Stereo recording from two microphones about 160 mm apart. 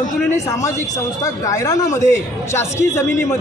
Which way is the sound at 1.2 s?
20° left (ahead or behind).